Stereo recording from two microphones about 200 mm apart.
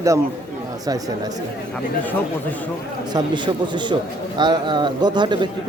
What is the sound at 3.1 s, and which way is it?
A man's voice, 25° right (ahead or behind).